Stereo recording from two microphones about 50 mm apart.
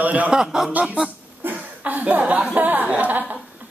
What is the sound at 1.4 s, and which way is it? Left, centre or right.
Chuckle, right.